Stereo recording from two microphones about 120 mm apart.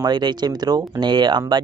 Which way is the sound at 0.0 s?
35° right (ahead or behind).